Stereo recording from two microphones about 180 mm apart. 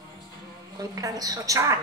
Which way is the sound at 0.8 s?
20° right (ahead or behind).